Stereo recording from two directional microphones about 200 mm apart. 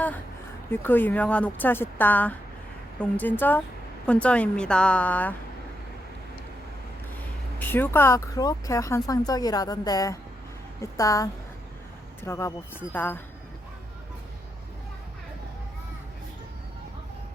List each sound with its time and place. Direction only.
0.7 s a woman's voice: 10° left (ahead or behind)
7.6 s speech: 10° left (ahead or behind)